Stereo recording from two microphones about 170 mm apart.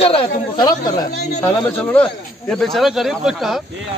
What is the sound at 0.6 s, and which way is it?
Speech, 20° left (ahead or behind).